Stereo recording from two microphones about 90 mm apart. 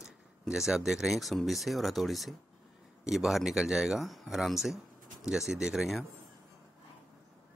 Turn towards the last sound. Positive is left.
turn(degrees=-5)  # may be behind; listen again after turning